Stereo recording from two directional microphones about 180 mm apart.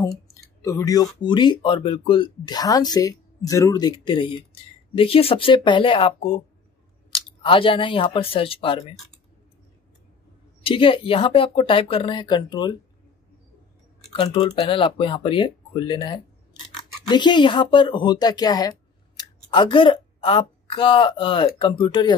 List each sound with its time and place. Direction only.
0.3 s speech: 15° left (ahead or behind)
10.6 s speech: 30° left (ahead or behind)
14.0 s speech: 30° left (ahead or behind)